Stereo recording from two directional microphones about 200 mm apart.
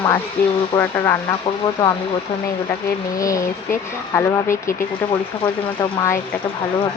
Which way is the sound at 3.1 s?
15° left (ahead or behind).